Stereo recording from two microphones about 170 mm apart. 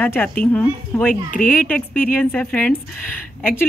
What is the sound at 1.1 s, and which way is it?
Speech, 55° left (ahead or behind).